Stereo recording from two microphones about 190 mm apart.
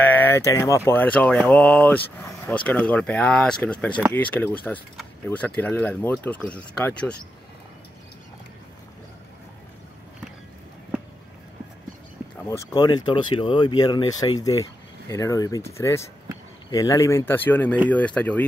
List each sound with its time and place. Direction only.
0.0 s speech: 10° left (ahead or behind)
12.4 s speech: 20° left (ahead or behind)